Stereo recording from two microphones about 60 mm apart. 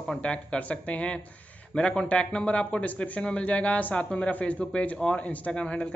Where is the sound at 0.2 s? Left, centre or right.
Centre.